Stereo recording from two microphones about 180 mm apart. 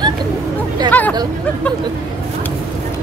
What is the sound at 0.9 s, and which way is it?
Speech, 10° left (ahead or behind).